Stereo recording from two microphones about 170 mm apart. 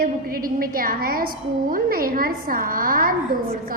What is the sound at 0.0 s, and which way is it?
A woman's voice, 60° right (ahead or behind).